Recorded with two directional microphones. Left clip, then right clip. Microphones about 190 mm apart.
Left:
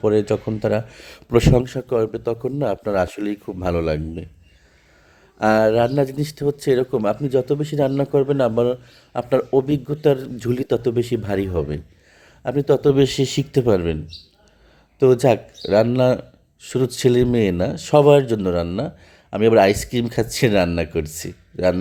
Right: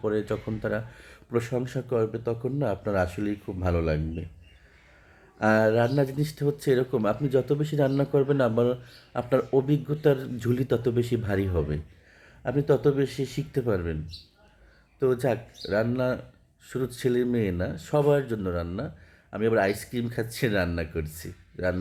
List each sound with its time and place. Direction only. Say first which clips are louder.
0.0 s speech: left 10 dB; 30° left (ahead or behind)
5.4 s speech: left 6 dB; 40° left (ahead or behind)